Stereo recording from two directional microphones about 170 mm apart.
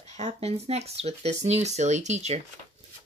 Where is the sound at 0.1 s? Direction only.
40° right (ahead or behind).